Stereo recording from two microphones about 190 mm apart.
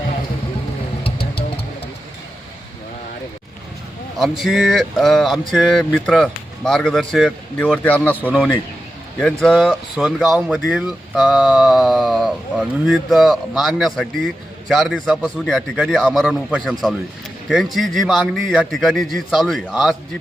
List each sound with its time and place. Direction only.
1.2 s music: 55° left (ahead or behind)
4.2 s speech: centre (ahead or behind)